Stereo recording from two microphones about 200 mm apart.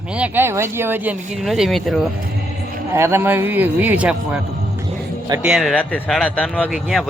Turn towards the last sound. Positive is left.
turn(degrees=0)  # may be behind; listen again after turning